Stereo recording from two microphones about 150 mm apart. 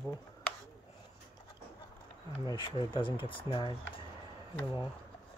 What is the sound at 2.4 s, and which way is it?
Speech, 30° left (ahead or behind).